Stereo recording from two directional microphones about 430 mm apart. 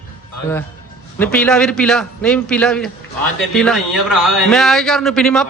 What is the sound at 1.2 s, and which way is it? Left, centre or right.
A man's voice, centre.